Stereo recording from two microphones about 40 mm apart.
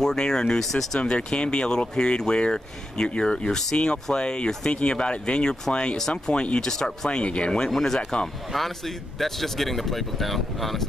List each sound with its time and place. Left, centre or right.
0.0 s speech: centre
5.9 s speech: centre
6.3 s speech: left
6.7 s speech: centre
7.1 s speech: left
7.7 s speech: centre